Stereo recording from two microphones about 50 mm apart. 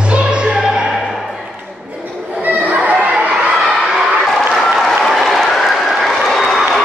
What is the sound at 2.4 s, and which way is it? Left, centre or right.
Crowd, right.